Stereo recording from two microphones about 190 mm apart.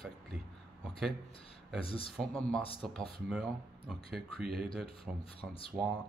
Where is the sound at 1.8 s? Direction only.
30° left (ahead or behind).